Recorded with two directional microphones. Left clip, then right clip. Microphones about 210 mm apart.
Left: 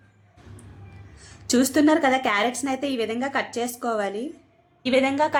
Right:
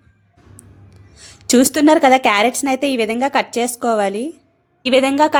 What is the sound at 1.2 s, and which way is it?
A woman's voice, 40° right (ahead or behind).